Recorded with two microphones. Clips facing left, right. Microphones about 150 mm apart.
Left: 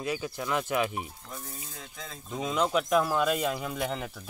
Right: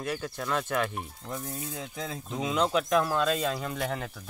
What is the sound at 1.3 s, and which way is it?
Speech, 60° right (ahead or behind).